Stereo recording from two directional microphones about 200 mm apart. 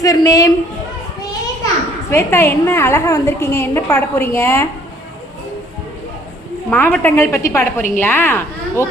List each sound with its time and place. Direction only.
0.0 s a woman's voice: 15° left (ahead or behind)
2.0 s a woman's voice: 10° left (ahead or behind)
6.7 s a woman's voice: 10° left (ahead or behind)